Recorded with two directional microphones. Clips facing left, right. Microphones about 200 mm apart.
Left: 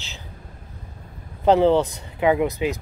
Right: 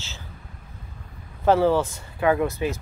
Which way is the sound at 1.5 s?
20° left (ahead or behind).